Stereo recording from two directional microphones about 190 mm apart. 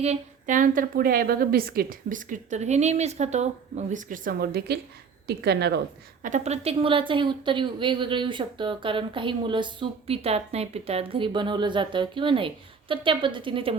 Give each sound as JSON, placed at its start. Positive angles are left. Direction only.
{"t": 0.0, "sound": "a woman's voice", "side_deg": -40}
{"t": 6.2, "sound": "a woman's voice", "side_deg": -40}